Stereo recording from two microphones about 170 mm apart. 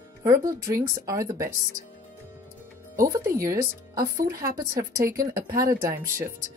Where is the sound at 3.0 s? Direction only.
20° right (ahead or behind).